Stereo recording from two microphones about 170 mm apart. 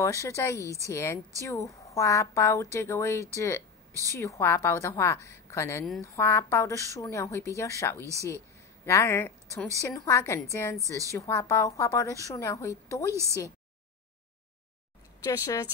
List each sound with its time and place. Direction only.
0.0 s a woman's voice: 20° left (ahead or behind)
3.9 s a woman's voice: 20° right (ahead or behind)
4.2 s a woman's voice: 15° left (ahead or behind)
10.8 s a woman's voice: 20° right (ahead or behind)
11.1 s a woman's voice: 20° left (ahead or behind)
13.1 s a woman's voice: 15° right (ahead or behind)
15.1 s speech: 20° left (ahead or behind)